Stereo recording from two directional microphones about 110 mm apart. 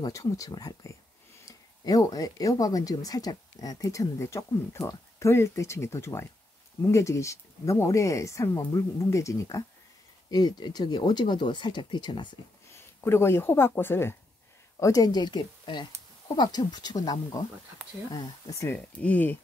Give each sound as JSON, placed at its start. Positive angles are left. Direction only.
{"t": 0.0, "sound": "speech", "side_deg": 30}
{"t": 12.7, "sound": "speech", "side_deg": 20}
{"t": 14.8, "sound": "speech", "side_deg": 30}
{"t": 18.9, "sound": "speech", "side_deg": 15}